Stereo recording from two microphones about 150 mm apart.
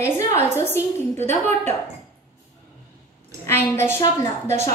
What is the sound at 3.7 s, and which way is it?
Speech, 15° left (ahead or behind).